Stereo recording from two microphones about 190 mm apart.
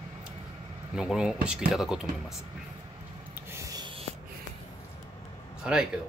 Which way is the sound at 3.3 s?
15° right (ahead or behind).